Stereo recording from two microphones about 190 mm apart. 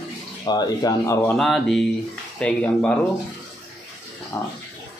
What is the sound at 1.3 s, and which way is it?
Speech, centre (ahead or behind).